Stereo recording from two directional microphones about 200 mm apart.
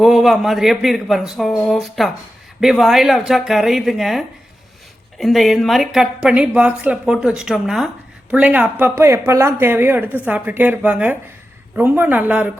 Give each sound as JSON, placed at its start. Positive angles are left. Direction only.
{"t": 0.0, "sound": "speech", "side_deg": 0}